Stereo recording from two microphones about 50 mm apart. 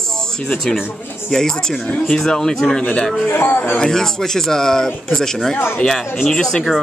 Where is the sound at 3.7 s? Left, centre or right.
Centre.